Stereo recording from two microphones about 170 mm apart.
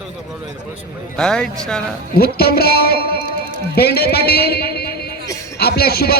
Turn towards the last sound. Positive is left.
turn(degrees=65)  # may be behind; listen again after turning